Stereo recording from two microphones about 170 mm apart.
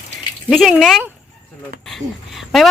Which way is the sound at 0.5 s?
Centre (ahead or behind).